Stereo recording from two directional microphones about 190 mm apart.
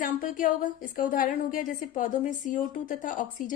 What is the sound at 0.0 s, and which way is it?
A woman's voice, 45° left (ahead or behind).